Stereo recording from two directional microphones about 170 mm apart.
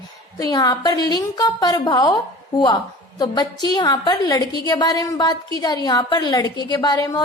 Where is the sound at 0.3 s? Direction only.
20° left (ahead or behind).